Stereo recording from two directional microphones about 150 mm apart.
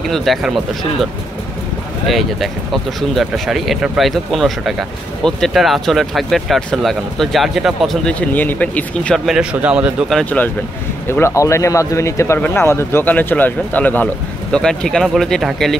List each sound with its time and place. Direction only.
0.1 s speech: centre (ahead or behind)
2.0 s speech: centre (ahead or behind)
11.1 s speech: 15° left (ahead or behind)